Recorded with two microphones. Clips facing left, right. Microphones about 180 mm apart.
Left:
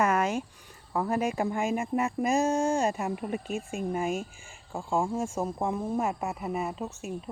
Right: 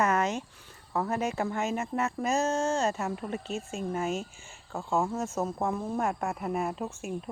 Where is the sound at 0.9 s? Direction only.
10° left (ahead or behind).